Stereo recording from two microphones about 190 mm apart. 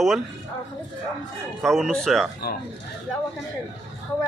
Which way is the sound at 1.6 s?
Centre (ahead or behind).